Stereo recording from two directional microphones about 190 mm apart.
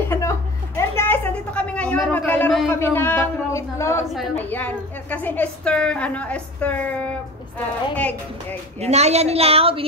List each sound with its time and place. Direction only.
0.0 s a sound: 15° left (ahead or behind)
4.4 s a woman's voice: 10° left (ahead or behind)
8.7 s a woman's voice: 35° right (ahead or behind)